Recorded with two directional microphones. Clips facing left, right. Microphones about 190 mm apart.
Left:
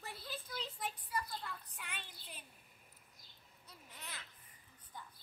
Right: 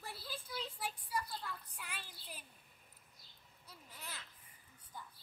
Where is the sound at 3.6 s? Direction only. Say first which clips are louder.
Right 1 dB; 10° right (ahead or behind).